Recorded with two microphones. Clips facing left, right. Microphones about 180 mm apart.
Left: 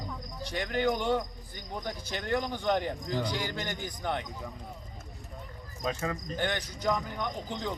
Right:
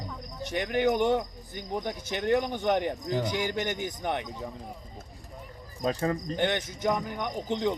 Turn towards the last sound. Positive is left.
turn(degrees=-20)  # may be behind; listen again after turning